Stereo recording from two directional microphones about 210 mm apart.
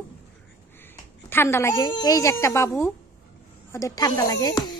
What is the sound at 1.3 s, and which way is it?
A woman's voice, 10° left (ahead or behind).